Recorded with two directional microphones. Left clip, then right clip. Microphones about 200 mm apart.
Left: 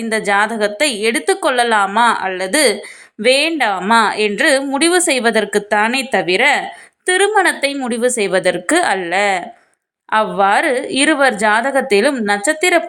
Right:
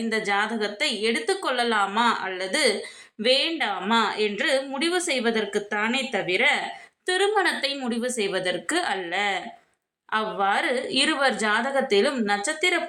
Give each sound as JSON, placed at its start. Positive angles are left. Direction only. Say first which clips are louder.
{"t": 0.1, "sound": "a woman's voice", "louder": "left 10 dB", "side_deg": 35}